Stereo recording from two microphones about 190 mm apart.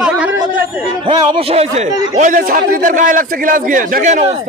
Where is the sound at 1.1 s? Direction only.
30° right (ahead or behind).